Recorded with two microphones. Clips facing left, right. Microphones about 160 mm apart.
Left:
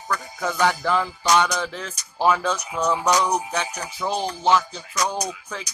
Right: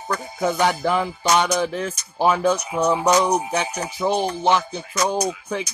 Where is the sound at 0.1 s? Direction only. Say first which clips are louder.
Right 4 dB; 25° right (ahead or behind).